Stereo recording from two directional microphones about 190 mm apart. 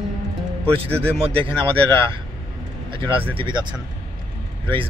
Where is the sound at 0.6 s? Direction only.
30° right (ahead or behind).